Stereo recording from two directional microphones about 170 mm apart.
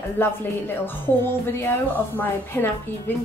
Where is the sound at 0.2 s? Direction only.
10° left (ahead or behind).